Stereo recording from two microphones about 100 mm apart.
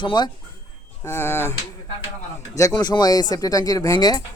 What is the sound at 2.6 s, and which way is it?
Speech, 40° left (ahead or behind).